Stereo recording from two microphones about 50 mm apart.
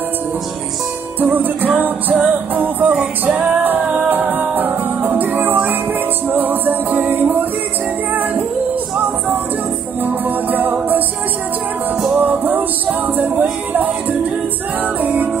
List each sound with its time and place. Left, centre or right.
1.2 s music: right
10.0 s music: right
12.2 s music: right
15.0 s music: right